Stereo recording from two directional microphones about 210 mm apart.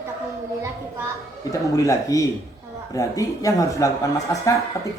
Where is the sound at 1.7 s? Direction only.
15° left (ahead or behind).